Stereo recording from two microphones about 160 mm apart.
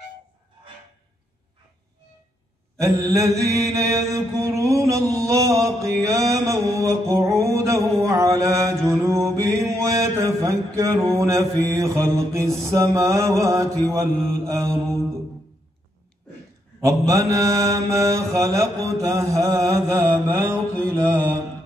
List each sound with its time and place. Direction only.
2.8 s mantra: 20° right (ahead or behind)
16.8 s mantra: 20° right (ahead or behind)